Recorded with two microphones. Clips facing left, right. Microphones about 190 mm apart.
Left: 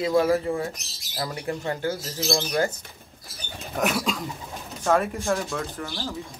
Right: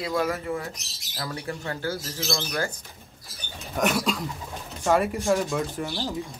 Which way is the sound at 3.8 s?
Centre (ahead or behind).